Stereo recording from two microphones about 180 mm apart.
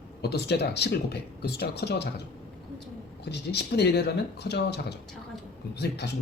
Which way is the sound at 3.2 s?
65° left (ahead or behind).